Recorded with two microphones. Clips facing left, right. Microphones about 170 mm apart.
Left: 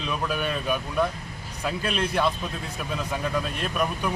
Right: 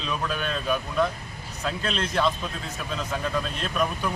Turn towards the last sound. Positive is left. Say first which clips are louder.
# even
turn(degrees=10)  # may be behind; listen again after turning